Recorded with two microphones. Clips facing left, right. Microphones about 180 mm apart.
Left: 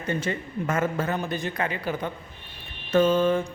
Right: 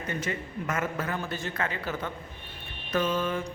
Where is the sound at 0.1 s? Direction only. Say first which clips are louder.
Left 6 dB; 30° left (ahead or behind); by 2.1 s 15° left (ahead or behind).